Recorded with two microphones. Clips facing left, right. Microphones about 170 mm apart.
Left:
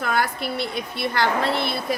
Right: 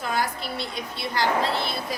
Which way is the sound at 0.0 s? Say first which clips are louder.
Left 3 dB; 60° left (ahead or behind).